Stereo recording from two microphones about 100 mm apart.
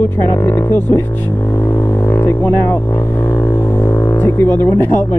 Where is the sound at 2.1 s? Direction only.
20° left (ahead or behind).